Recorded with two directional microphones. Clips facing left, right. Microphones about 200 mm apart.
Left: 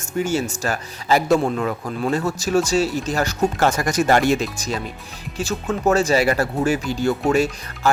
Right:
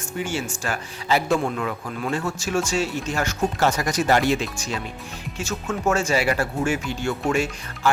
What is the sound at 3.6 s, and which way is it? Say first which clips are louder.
Speech: left 2 dB; 50° left (ahead or behind).